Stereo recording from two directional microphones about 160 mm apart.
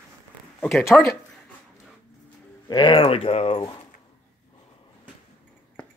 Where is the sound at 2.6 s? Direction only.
30° left (ahead or behind).